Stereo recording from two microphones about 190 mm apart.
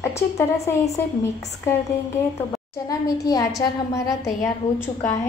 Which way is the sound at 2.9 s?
20° left (ahead or behind).